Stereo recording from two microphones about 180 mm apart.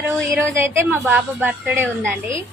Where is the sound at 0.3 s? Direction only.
15° right (ahead or behind).